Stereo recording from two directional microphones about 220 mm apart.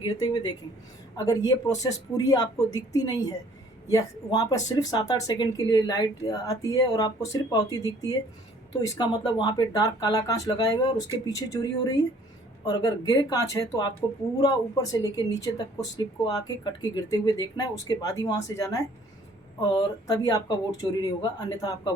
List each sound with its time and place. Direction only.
0.0 s speech: 20° left (ahead or behind)